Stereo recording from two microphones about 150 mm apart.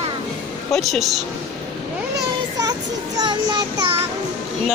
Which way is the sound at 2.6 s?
25° right (ahead or behind).